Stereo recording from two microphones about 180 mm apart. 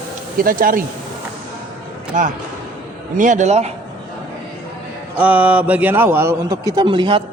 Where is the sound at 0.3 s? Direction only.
50° right (ahead or behind).